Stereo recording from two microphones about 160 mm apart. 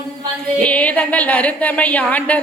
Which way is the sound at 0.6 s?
10° left (ahead or behind).